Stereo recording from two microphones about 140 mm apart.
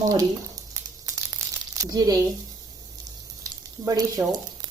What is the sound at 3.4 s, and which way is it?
Sizzle, 25° right (ahead or behind).